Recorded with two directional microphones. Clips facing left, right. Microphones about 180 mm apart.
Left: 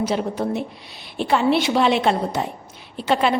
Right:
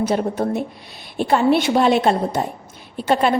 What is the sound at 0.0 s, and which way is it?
A woman's voice, 50° right (ahead or behind).